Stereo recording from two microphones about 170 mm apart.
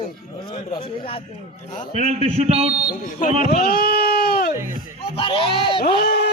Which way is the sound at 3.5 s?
65° left (ahead or behind).